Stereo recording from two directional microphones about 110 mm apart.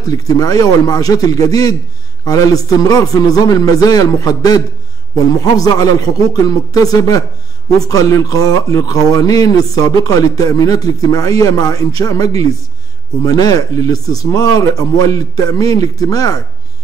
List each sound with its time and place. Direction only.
0.2 s speech: 30° left (ahead or behind)